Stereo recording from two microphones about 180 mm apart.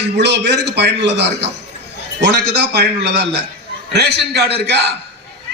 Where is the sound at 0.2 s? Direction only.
70° right (ahead or behind).